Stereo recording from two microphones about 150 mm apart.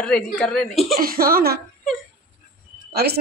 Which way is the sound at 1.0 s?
80° right.